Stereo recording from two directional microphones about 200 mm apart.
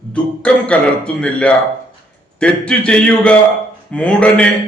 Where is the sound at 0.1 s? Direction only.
5° left (ahead or behind).